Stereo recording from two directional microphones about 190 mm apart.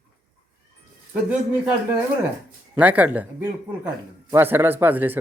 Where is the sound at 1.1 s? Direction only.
5° right (ahead or behind).